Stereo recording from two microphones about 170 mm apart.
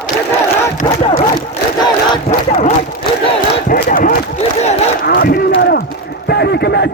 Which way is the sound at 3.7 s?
55° left (ahead or behind).